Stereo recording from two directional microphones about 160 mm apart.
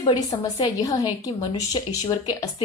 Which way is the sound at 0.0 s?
25° left (ahead or behind).